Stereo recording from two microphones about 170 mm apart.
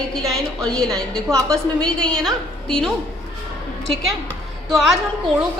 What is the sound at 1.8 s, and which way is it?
A woman's voice, 5° left (ahead or behind).